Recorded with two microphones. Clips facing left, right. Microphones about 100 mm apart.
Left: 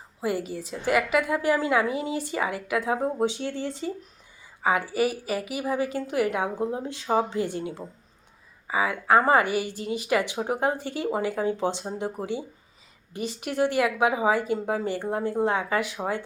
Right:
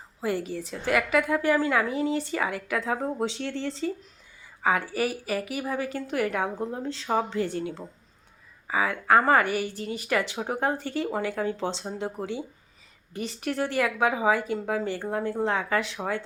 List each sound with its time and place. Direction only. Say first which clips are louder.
0.2 s a woman's voice: even; 10° left (ahead or behind)